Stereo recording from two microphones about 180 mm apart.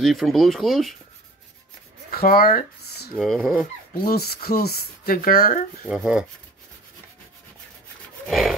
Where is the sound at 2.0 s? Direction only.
55° left (ahead or behind).